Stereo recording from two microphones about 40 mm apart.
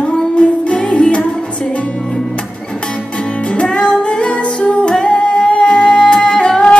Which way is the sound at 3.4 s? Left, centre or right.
Left.